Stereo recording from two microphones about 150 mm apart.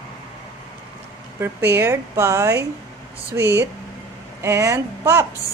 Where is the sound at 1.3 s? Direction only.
15° right (ahead or behind).